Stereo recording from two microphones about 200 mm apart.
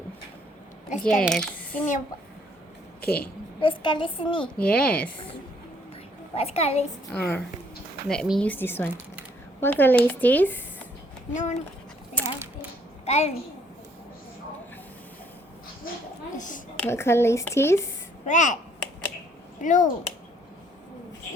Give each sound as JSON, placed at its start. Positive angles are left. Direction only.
{"t": 1.0, "sound": "a child's voice", "side_deg": 0}
{"t": 3.0, "sound": "a woman's voice", "side_deg": 50}
{"t": 3.6, "sound": "a child's voice", "side_deg": 25}
{"t": 4.5, "sound": "speech", "side_deg": 5}
{"t": 6.3, "sound": "a child's voice", "side_deg": 30}
{"t": 7.1, "sound": "speech", "side_deg": 10}
{"t": 11.3, "sound": "a child's voice", "side_deg": 35}
{"t": 12.2, "sound": "a sound", "side_deg": 5}
{"t": 13.1, "sound": "a child's voice", "side_deg": 30}
{"t": 15.9, "sound": "a sound", "side_deg": 45}
{"t": 16.4, "sound": "a woman's voice", "side_deg": 40}
{"t": 16.7, "sound": "speech", "side_deg": 10}
{"t": 18.3, "sound": "a child's voice", "side_deg": 40}
{"t": 19.6, "sound": "a child's voice", "side_deg": 40}